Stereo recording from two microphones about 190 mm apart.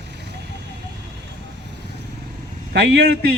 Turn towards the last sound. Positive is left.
turn(degrees=-55)  # may be behind; listen again after turning